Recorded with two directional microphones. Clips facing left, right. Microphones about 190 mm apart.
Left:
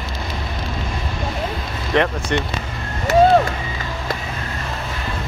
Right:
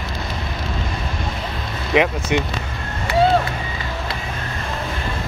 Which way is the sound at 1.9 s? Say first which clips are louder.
Right 1 dB; 10° right (ahead or behind).